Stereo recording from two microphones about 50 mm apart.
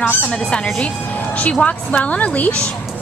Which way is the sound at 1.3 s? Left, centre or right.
Left.